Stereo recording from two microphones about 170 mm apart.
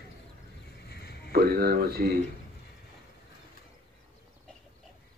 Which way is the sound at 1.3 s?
65° right (ahead or behind).